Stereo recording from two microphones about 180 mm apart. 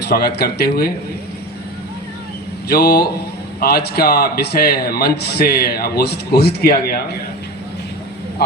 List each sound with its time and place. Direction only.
0.0 s a man's voice: 60° left (ahead or behind)
2.6 s a man's voice: 60° left (ahead or behind)